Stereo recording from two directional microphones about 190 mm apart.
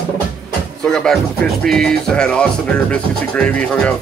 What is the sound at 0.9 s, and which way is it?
Speech, 5° left (ahead or behind).